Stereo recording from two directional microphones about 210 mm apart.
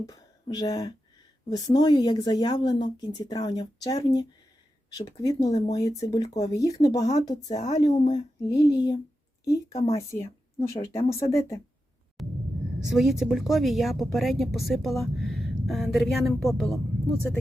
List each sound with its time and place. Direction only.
0.0 s a woman's voice: 20° left (ahead or behind)
12.2 s a sound: centre (ahead or behind)
12.8 s a woman's voice: centre (ahead or behind)